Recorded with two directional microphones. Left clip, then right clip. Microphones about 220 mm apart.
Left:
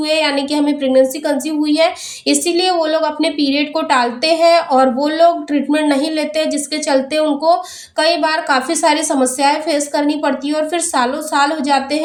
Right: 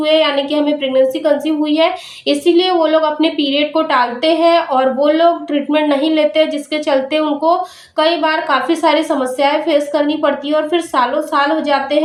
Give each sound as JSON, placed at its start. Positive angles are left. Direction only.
{"t": 0.0, "sound": "a woman's voice", "side_deg": 45}